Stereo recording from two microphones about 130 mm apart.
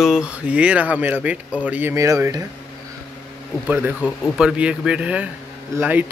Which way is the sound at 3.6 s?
10° right (ahead or behind).